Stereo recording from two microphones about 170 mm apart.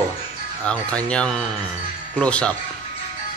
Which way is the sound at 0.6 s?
5° left (ahead or behind).